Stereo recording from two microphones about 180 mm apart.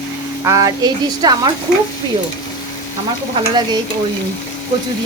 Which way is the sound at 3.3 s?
25° right (ahead or behind).